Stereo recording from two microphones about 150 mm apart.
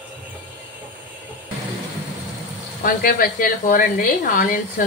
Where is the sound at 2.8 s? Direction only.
70° left (ahead or behind).